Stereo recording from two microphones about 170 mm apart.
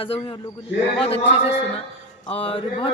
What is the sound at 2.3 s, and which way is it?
Speech, 35° left (ahead or behind).